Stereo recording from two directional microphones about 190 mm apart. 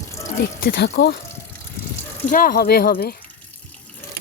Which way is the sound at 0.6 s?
55° left (ahead or behind).